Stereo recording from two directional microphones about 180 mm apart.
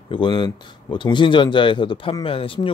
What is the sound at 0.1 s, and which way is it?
Speech, 25° left (ahead or behind).